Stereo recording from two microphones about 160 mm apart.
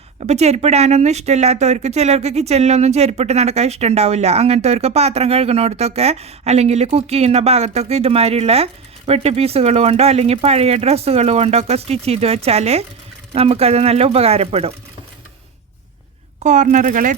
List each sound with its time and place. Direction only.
0.2 s speech: 45° right (ahead or behind)
16.4 s speech: 50° right (ahead or behind)